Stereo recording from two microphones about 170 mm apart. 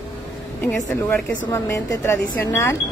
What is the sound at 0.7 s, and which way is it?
Speech, 15° left (ahead or behind).